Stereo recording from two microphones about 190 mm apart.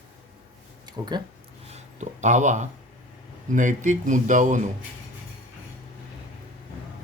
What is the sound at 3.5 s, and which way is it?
Speech, 40° right (ahead or behind).